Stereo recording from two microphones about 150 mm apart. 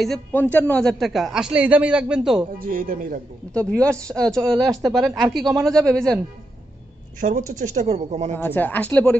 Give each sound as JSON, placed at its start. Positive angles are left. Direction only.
{"t": 0.3, "sound": "a man's voice", "side_deg": 10}
{"t": 2.6, "sound": "speech", "side_deg": -70}
{"t": 3.5, "sound": "a man's voice", "side_deg": 5}
{"t": 7.2, "sound": "speech", "side_deg": -65}
{"t": 8.4, "sound": "speech", "side_deg": 10}